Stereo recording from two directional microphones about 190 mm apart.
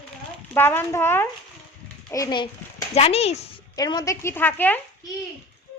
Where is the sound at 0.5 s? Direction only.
10° left (ahead or behind).